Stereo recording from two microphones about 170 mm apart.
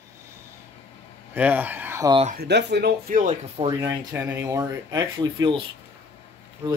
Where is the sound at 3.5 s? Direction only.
30° right (ahead or behind).